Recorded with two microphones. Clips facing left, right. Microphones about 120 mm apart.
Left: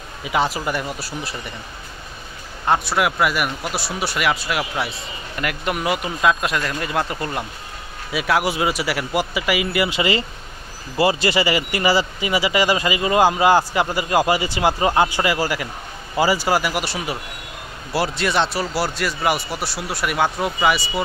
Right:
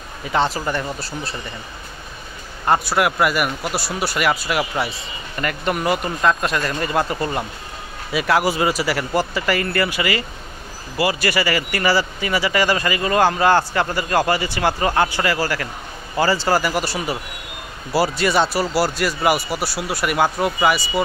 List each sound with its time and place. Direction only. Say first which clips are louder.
0.2 s speech: right 1 dB; 5° left (ahead or behind)
2.6 s speech: right 1 dB; 5° right (ahead or behind)